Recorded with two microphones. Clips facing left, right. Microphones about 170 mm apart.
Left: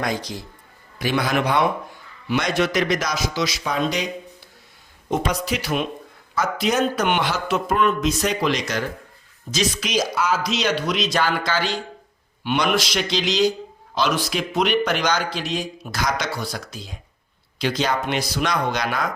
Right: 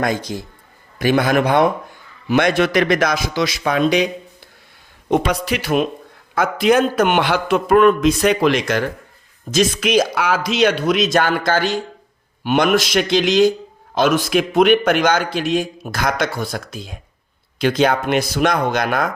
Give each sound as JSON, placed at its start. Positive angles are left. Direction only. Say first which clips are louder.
{"t": 0.0, "sound": "a man's voice", "louder": "right 5 dB", "side_deg": -50}
{"t": 5.0, "sound": "a man's voice", "louder": "right 5 dB", "side_deg": -65}